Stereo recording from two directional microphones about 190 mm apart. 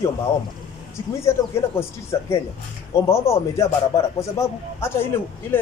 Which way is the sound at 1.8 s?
15° left (ahead or behind).